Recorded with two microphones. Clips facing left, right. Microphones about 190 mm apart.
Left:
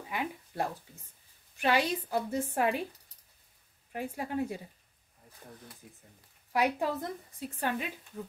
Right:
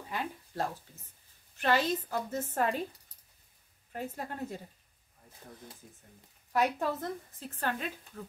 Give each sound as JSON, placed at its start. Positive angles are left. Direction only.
{"t": 0.1, "sound": "a woman's voice", "side_deg": 15}
{"t": 3.9, "sound": "a woman's voice", "side_deg": 10}
{"t": 6.5, "sound": "a woman's voice", "side_deg": 10}